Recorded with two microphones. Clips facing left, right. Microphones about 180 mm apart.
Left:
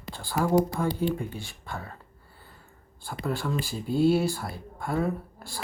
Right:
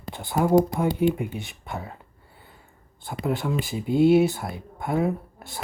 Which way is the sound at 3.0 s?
20° right (ahead or behind).